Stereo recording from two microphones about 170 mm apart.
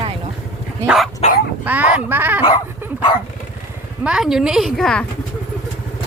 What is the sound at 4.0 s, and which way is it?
Speech, 5° right (ahead or behind).